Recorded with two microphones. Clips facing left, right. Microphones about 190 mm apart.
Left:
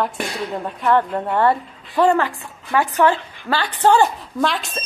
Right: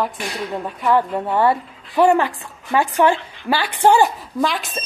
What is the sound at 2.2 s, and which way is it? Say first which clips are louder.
Speech: right 1 dB; 25° right (ahead or behind).